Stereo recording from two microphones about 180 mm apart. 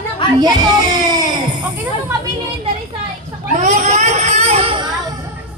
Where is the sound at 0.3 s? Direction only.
20° right (ahead or behind).